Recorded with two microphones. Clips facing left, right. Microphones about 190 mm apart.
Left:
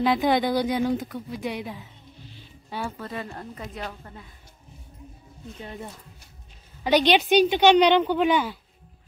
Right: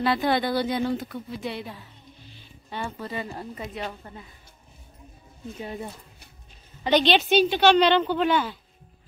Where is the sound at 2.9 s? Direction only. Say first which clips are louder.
Right 1 dB; centre (ahead or behind).